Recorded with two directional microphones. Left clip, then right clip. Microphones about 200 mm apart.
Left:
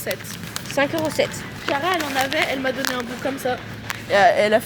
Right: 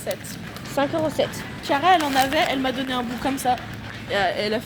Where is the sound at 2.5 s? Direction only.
30° right (ahead or behind).